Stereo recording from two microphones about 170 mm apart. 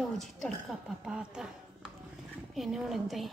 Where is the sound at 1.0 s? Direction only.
5° right (ahead or behind).